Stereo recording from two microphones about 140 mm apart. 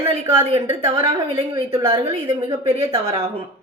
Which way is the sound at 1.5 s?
25° right (ahead or behind).